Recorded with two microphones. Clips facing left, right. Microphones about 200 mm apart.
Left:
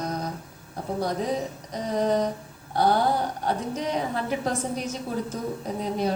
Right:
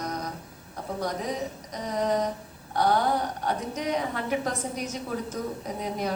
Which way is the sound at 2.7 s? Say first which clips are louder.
Left 2 dB; 30° left (ahead or behind).